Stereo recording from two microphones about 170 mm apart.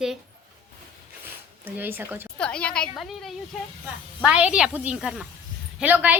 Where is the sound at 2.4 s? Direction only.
5° left (ahead or behind).